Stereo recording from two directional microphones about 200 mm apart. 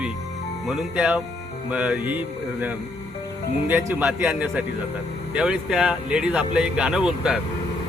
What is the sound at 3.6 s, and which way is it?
Speech, 10° right (ahead or behind).